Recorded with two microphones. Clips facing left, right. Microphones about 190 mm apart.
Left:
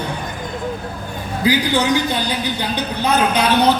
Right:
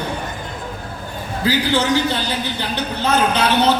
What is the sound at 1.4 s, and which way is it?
Speech, 15° left (ahead or behind).